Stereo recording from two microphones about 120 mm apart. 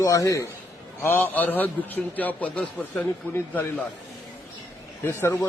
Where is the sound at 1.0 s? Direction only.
15° left (ahead or behind).